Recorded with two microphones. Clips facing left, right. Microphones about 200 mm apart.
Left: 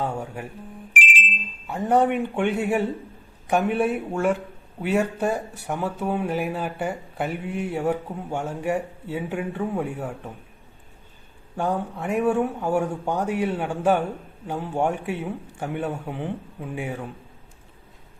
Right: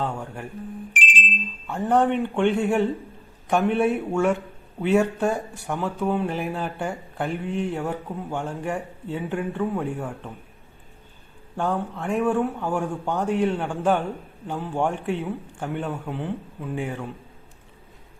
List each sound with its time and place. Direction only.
0.0 s speech: 10° left (ahead or behind)
11.5 s speech: 10° left (ahead or behind)